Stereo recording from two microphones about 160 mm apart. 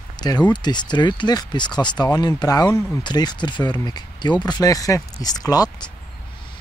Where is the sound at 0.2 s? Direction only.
25° left (ahead or behind).